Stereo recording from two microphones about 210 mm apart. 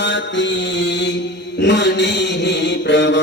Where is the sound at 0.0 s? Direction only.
60° left (ahead or behind).